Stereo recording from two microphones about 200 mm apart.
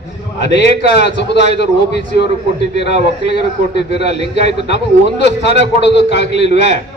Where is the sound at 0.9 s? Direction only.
60° left (ahead or behind).